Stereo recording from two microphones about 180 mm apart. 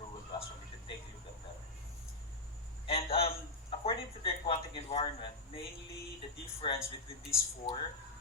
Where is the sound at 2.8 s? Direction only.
30° left (ahead or behind).